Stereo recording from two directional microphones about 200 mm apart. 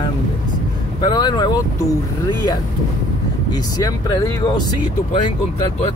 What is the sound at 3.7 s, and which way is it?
Speech, 20° left (ahead or behind).